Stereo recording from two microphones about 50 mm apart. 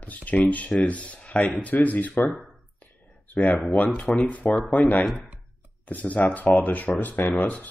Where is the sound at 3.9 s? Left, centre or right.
Left.